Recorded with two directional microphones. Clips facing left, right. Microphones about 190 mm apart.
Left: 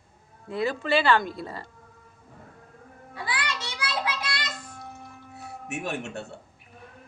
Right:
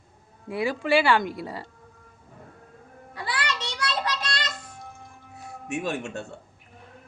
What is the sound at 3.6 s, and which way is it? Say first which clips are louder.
Child singing: right 2 dB; 10° left (ahead or behind).